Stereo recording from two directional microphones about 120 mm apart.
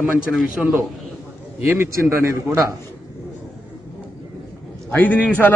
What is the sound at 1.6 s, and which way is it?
A man's voice, 20° right (ahead or behind).